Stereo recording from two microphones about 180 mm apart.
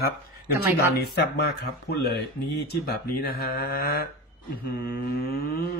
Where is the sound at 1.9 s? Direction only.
70° left (ahead or behind).